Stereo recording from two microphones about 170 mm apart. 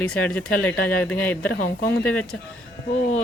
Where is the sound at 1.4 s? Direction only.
60° left (ahead or behind).